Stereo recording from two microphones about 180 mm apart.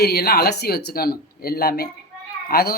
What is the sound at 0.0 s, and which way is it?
Speech, 60° left (ahead or behind).